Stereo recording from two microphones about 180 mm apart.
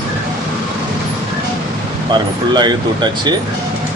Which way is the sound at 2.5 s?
25° right (ahead or behind).